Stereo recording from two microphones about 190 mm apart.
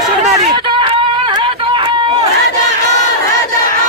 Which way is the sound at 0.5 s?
25° right (ahead or behind).